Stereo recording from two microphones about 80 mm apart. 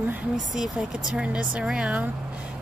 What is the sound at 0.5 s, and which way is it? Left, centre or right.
Speech, centre.